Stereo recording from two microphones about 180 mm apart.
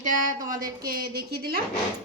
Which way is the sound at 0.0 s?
45° right (ahead or behind).